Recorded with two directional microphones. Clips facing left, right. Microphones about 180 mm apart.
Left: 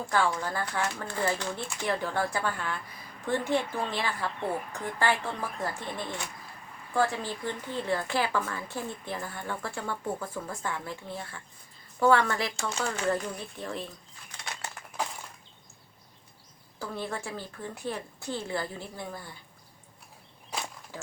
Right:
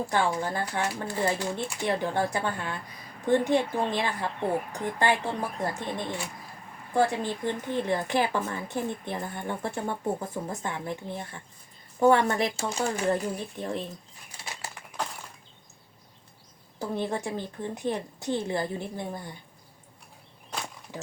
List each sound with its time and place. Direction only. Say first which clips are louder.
0.0 s speech: right 1 dB; 20° right (ahead or behind)
14.3 s a sound: even; 5° right (ahead or behind)
16.7 s speech: right 5 dB; 20° right (ahead or behind)